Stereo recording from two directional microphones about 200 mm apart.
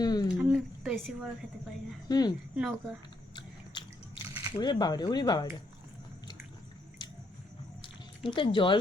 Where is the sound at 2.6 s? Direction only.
5° right (ahead or behind).